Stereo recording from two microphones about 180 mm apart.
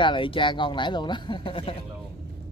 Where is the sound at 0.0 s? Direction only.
25° left (ahead or behind).